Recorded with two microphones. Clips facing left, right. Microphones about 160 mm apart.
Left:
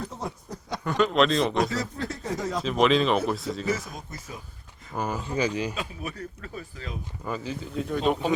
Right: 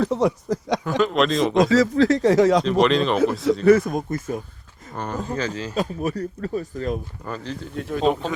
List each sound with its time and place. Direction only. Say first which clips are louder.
0.0 s speech: right 14 dB; 90° right
0.9 s speech: right 1 dB; centre (ahead or behind)
1.5 s speech: right 11 dB; 90° right
2.6 s speech: right 3 dB; centre (ahead or behind)
3.7 s speech: right 18 dB; 55° right (ahead or behind)
4.9 s speech: right 1 dB; 10° left (ahead or behind)
5.7 s speech: right 10 dB; 40° right (ahead or behind)
7.3 s speech: even; 5° left (ahead or behind)